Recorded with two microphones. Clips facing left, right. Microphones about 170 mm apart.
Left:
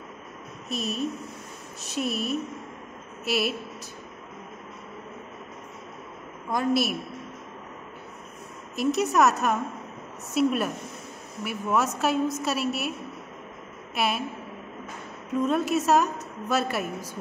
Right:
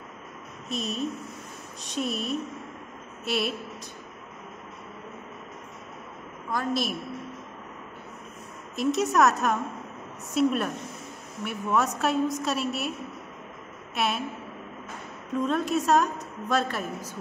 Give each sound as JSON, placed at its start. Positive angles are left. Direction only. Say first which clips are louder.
{"t": 0.7, "sound": "a woman's voice", "louder": "left 1 dB", "side_deg": 0}
{"t": 6.5, "sound": "a woman's voice", "louder": "left 4 dB", "side_deg": 10}
{"t": 8.7, "sound": "a woman's voice", "louder": "left 1 dB", "side_deg": 0}
{"t": 13.9, "sound": "a woman's voice", "louder": "left 1 dB", "side_deg": 0}
{"t": 15.3, "sound": "a woman's voice", "louder": "left 2 dB", "side_deg": 5}